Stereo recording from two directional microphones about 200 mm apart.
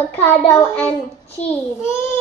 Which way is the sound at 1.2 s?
30° left (ahead or behind).